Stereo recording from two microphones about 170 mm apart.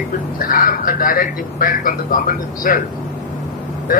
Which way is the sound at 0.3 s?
55° left (ahead or behind).